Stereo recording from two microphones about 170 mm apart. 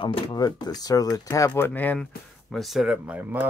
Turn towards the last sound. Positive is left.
turn(degrees=-10)  # may be behind; listen again after turning